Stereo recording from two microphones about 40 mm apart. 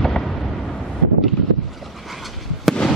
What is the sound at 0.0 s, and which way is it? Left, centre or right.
Vehicle, centre.